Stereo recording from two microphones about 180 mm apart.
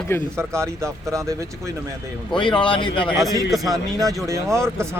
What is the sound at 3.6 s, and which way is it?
Speech, 20° right (ahead or behind).